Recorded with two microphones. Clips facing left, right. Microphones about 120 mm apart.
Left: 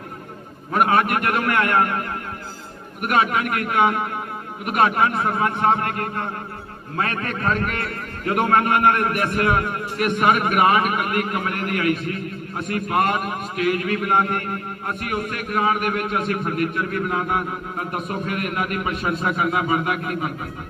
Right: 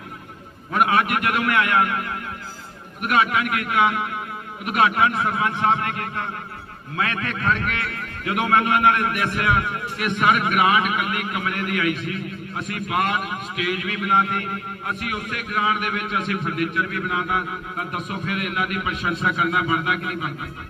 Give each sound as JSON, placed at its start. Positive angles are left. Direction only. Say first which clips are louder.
{"t": 0.7, "sound": "a man's voice", "louder": "left 1 dB", "side_deg": 40}